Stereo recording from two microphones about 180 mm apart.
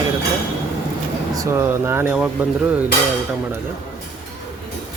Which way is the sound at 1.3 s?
15° right (ahead or behind).